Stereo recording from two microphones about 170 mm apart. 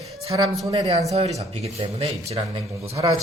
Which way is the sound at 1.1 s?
40° right (ahead or behind).